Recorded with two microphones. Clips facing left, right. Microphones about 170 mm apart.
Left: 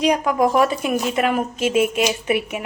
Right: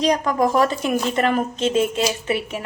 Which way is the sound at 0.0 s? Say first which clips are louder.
Left 1 dB; 10° left (ahead or behind).